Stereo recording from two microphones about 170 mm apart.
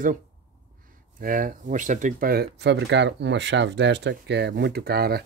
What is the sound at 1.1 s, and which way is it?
Speech, 55° right (ahead or behind).